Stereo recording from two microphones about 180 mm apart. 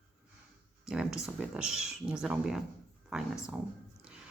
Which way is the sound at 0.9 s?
5° right (ahead or behind).